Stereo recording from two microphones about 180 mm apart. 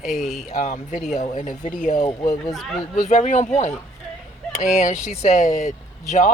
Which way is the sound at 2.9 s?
45° left (ahead or behind).